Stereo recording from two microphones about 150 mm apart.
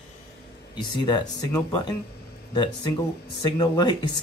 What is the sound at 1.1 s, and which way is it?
Speech, 30° left (ahead or behind).